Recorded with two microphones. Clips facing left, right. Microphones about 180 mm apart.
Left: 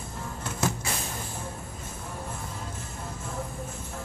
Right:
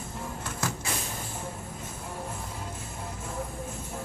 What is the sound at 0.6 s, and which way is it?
Vehicle, 20° left (ahead or behind).